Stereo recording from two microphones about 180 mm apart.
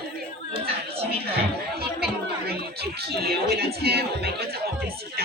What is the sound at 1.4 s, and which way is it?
Chatter, 60° right (ahead or behind).